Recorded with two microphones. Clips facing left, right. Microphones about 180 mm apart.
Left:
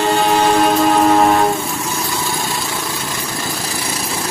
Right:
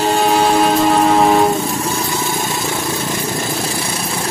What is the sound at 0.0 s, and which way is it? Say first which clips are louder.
Music: even; centre (ahead or behind).